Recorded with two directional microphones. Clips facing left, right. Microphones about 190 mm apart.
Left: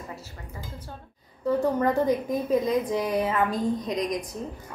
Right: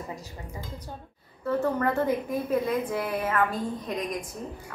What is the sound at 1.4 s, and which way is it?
Speech, 15° left (ahead or behind).